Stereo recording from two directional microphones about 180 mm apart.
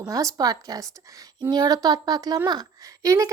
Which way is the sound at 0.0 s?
20° right (ahead or behind).